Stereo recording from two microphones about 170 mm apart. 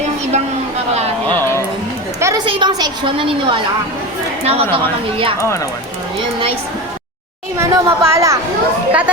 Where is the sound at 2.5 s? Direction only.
25° right (ahead or behind).